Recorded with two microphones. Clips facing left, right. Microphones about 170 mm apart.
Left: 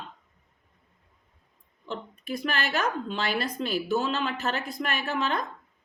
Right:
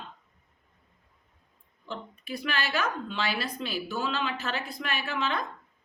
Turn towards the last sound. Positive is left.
turn(degrees=45)  # may be behind; listen again after turning